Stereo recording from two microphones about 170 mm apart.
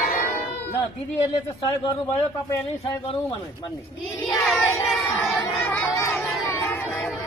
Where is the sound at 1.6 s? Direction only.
25° left (ahead or behind).